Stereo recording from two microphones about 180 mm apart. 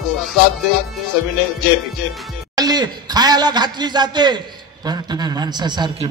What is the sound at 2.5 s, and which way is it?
A man's voice, 20° right (ahead or behind).